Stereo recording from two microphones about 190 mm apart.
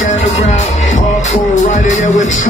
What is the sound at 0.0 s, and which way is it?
Music, 40° left (ahead or behind).